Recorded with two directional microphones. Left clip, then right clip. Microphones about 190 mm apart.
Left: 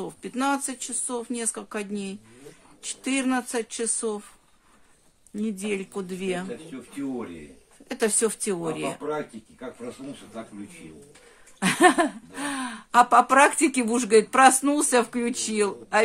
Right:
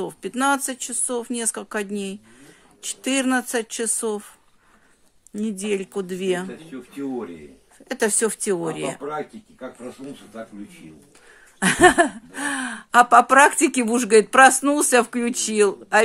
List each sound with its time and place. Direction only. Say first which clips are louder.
0.0 s speech: right 5 dB; 25° right (ahead or behind)
5.3 s speech: right 4 dB; 25° right (ahead or behind)
7.9 s speech: right 3 dB; 20° right (ahead or behind)
11.6 s speech: right 4 dB; 25° right (ahead or behind)